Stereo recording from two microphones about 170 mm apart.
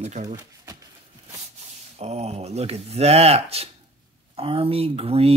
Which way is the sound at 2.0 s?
40° right (ahead or behind).